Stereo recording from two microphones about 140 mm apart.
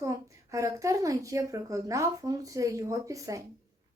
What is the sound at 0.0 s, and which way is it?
A woman's voice, 25° right (ahead or behind).